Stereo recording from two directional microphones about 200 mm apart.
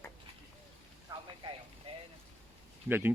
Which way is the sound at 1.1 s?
20° right (ahead or behind).